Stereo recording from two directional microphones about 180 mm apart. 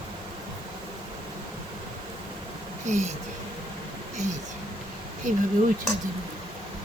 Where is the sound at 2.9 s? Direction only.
40° right (ahead or behind).